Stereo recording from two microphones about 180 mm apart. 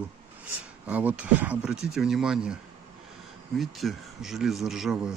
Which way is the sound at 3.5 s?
Centre (ahead or behind).